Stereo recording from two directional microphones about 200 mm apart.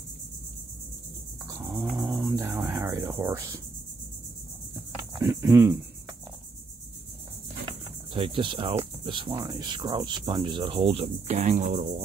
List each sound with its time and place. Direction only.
1.5 s cricket: 15° right (ahead or behind)
5.2 s cricket: 15° right (ahead or behind)
8.1 s speech: 25° right (ahead or behind)